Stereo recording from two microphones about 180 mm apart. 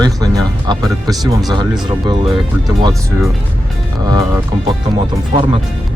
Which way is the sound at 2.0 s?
25° right (ahead or behind).